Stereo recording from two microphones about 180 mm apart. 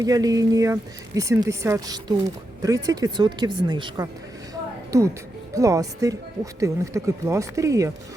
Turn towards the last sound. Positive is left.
turn(degrees=-15)  # may be behind; listen again after turning